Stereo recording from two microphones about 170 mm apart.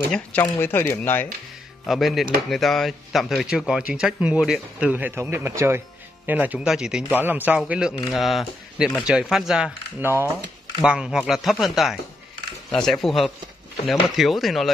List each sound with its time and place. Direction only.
0.1 s speech: 10° left (ahead or behind)
1.9 s speech: centre (ahead or behind)
10.0 s speech: 15° right (ahead or behind)
10.8 s speech: 5° right (ahead or behind)